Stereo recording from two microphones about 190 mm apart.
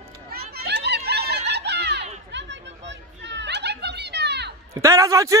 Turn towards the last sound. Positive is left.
turn(degrees=-15)  # may be behind; listen again after turning